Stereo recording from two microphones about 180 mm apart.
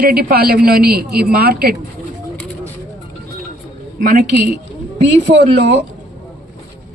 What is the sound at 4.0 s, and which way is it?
Speech, 45° right (ahead or behind).